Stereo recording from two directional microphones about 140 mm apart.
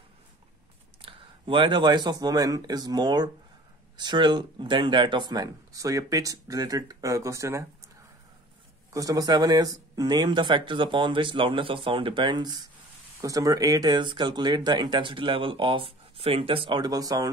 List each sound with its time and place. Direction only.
1.0 s speech: 35° right (ahead or behind); by 7.6 s 20° right (ahead or behind)
8.9 s speech: 25° right (ahead or behind)